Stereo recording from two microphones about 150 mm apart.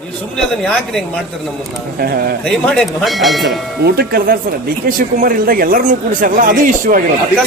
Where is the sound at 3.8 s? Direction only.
90° right.